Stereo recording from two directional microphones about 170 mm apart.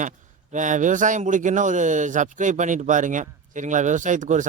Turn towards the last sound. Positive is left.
turn(degrees=-45)  # may be behind; listen again after turning